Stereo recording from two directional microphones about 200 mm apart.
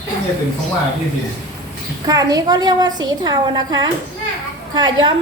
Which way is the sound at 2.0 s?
20° right (ahead or behind).